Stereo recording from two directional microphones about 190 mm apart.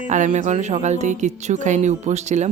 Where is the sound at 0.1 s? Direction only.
40° right (ahead or behind).